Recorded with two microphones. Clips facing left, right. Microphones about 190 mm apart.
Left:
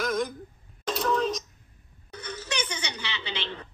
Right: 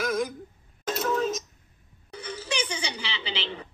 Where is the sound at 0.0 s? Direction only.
5° right (ahead or behind).